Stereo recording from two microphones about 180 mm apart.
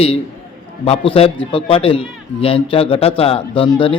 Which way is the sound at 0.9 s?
35° left (ahead or behind).